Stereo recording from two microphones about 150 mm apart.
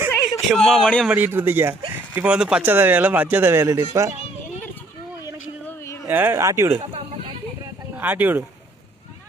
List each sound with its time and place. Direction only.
0.4 s speech: centre (ahead or behind)
1.0 s speech: 10° right (ahead or behind)
6.1 s speech: 15° right (ahead or behind)
7.9 s speech: 10° right (ahead or behind)